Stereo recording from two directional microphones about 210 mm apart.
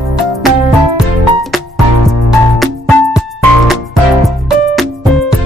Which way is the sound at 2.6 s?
Centre (ahead or behind).